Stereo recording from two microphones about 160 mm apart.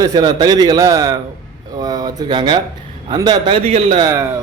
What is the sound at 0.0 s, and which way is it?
A man's voice, 25° right (ahead or behind).